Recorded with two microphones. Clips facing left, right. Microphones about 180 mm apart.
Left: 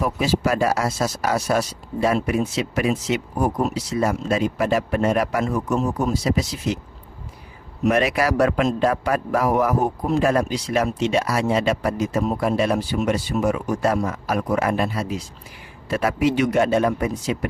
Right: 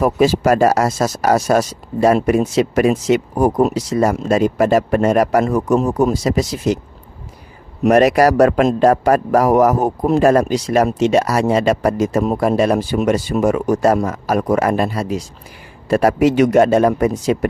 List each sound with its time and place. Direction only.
0.0 s speech: 50° right (ahead or behind)
5.7 s speech: 90° right
6.2 s speech: 45° right (ahead or behind)
7.9 s speech: 40° right (ahead or behind)